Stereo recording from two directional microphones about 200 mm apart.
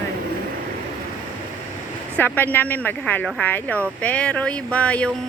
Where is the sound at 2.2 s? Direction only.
10° left (ahead or behind).